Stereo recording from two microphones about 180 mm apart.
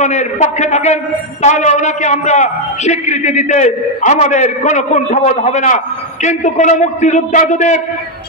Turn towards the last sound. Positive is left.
turn(degrees=40)  # may be behind; listen again after turning